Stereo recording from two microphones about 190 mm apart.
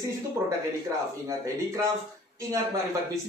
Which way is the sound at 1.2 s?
15° right (ahead or behind).